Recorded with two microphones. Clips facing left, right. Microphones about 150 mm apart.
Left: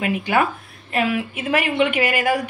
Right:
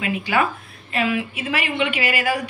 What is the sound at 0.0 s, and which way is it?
A woman's voice, 50° left (ahead or behind).